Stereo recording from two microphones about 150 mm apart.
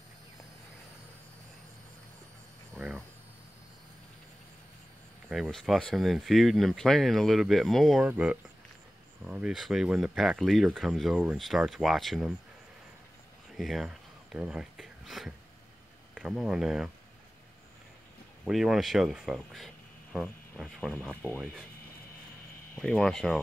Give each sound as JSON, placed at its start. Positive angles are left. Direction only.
{"t": 5.3, "sound": "speech", "side_deg": 0}
{"t": 13.6, "sound": "speech", "side_deg": 0}
{"t": 18.4, "sound": "speech", "side_deg": 0}
{"t": 22.8, "sound": "speech", "side_deg": 5}